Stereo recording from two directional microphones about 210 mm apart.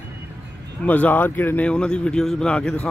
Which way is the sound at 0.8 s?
10° left (ahead or behind).